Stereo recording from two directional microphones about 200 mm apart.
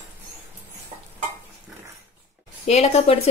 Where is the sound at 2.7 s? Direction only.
30° left (ahead or behind).